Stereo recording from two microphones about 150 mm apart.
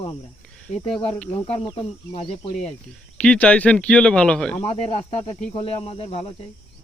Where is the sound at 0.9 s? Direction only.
10° left (ahead or behind).